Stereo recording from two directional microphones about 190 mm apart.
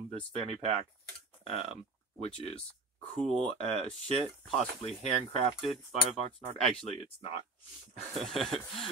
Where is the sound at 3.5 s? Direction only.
35° left (ahead or behind).